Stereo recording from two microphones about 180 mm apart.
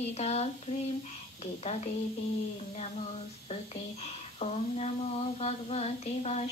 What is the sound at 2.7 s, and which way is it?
Speech, 35° left (ahead or behind).